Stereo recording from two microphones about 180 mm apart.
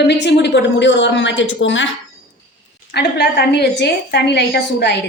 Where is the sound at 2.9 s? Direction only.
65° left (ahead or behind).